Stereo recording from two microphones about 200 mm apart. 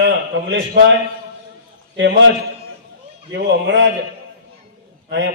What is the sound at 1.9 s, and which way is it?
Speech, 65° right (ahead or behind).